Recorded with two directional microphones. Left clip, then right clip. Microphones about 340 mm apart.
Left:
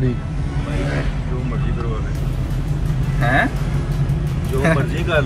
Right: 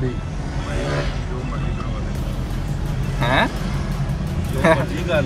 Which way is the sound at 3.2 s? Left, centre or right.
Centre.